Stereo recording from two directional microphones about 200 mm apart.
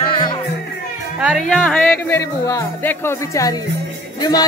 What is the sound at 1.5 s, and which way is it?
Speech, 5° left (ahead or behind).